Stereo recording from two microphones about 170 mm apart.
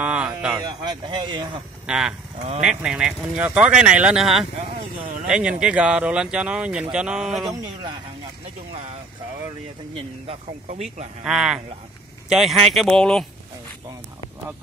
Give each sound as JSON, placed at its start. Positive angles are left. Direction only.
{"t": 0.0, "sound": "a sound", "side_deg": -5}
{"t": 0.7, "sound": "speech", "side_deg": -25}
{"t": 1.9, "sound": "speech", "side_deg": -5}
{"t": 10.7, "sound": "speech", "side_deg": -45}
{"t": 11.2, "sound": "speech", "side_deg": -5}